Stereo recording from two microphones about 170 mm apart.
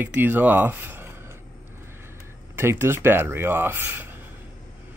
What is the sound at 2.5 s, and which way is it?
Speech, 15° right (ahead or behind).